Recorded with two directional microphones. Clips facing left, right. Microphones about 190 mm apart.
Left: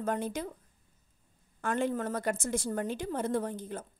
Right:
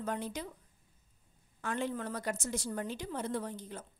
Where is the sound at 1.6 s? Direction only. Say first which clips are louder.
Left 5 dB; 50° left (ahead or behind).